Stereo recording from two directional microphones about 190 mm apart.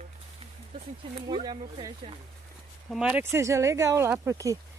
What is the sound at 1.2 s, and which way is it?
Speech, 25° right (ahead or behind).